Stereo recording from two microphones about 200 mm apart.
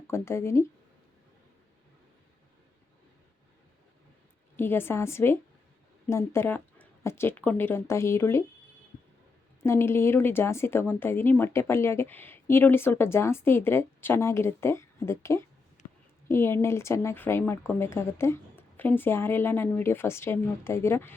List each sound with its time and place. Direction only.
0.1 s a woman's voice: 15° left (ahead or behind)
4.5 s a woman's voice: 10° left (ahead or behind)
9.6 s a woman's voice: 10° left (ahead or behind)
15.8 s a sound: 35° left (ahead or behind)
16.3 s a woman's voice: 10° left (ahead or behind)